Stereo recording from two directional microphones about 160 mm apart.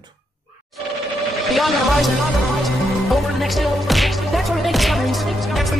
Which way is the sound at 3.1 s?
Centre (ahead or behind).